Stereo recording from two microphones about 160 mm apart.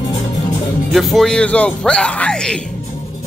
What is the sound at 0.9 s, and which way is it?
Speech, centre (ahead or behind).